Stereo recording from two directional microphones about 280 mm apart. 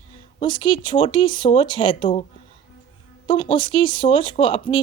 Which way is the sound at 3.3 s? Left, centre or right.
Centre.